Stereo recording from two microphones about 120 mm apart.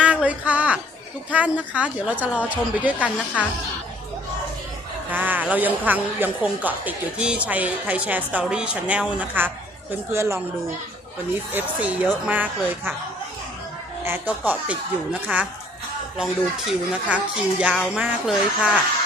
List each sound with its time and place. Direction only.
0.0 s a sound: 10° right (ahead or behind)
1.3 s a woman's voice: 10° right (ahead or behind)
5.1 s a woman's voice: 15° right (ahead or behind)
11.5 s a woman's voice: 10° right (ahead or behind)
14.0 s a woman's voice: 15° right (ahead or behind)